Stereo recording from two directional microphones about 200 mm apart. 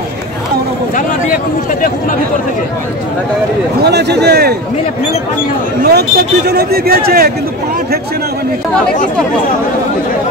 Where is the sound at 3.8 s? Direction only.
55° right (ahead or behind).